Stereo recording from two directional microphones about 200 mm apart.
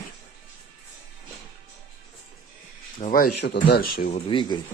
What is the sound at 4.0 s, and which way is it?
Speech, 35° left (ahead or behind).